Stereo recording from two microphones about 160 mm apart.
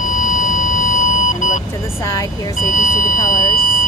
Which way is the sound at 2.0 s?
20° left (ahead or behind).